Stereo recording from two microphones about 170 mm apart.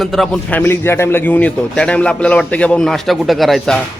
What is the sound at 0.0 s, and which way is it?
A man's voice, centre (ahead or behind).